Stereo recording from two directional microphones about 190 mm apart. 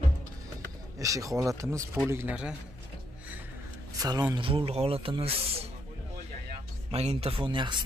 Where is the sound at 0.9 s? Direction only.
15° right (ahead or behind).